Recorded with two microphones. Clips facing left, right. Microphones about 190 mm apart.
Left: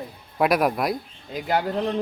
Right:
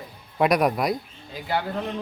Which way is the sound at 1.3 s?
45° left (ahead or behind).